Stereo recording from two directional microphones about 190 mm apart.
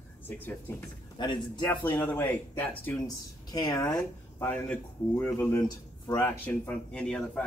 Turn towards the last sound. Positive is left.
turn(degrees=5)  # may be behind; listen again after turning